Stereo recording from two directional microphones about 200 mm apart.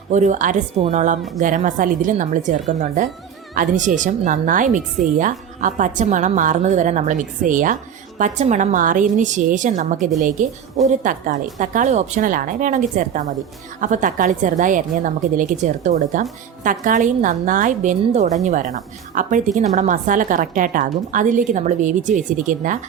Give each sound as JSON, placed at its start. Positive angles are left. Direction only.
{"t": 0.1, "sound": "a woman's voice", "side_deg": -35}